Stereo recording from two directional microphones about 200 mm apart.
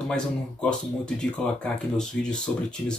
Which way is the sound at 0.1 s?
5° left (ahead or behind).